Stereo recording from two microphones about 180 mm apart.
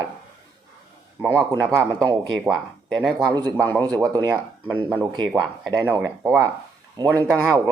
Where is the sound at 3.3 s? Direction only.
20° right (ahead or behind).